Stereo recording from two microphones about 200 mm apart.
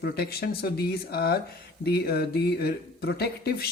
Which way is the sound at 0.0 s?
50° left (ahead or behind).